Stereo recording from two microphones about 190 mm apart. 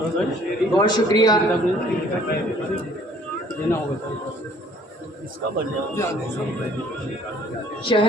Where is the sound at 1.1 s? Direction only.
20° left (ahead or behind).